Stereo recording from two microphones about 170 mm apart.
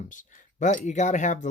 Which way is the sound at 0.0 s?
50° left (ahead or behind).